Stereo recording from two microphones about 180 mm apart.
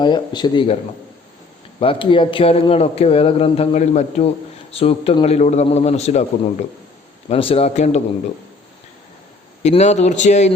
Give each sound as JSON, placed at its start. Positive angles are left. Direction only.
{"t": 0.0, "sound": "speech", "side_deg": 25}
{"t": 1.8, "sound": "speech", "side_deg": 30}
{"t": 9.6, "sound": "speech", "side_deg": 40}